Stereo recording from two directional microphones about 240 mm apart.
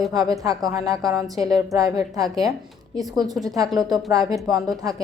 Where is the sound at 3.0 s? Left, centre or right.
Centre.